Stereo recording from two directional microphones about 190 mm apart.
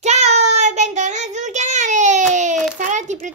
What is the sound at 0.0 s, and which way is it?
Child singing, 35° right (ahead or behind).